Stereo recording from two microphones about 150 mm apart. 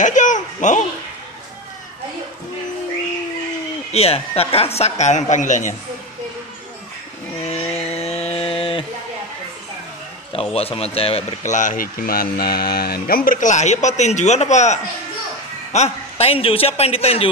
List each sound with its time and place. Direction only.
0.0 s a sound: 55° left (ahead or behind)
3.9 s speech: 40° left (ahead or behind)
7.4 s chainsaw: 45° left (ahead or behind)
10.3 s a man's voice: 40° left (ahead or behind)
11.5 s a man's voice: 65° left (ahead or behind); by 17.3 s 40° left (ahead or behind)